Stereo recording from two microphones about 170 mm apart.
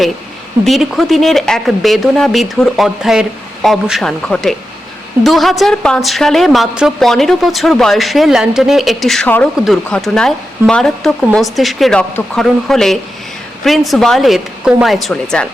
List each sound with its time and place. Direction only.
0.6 s a woman's voice: centre (ahead or behind)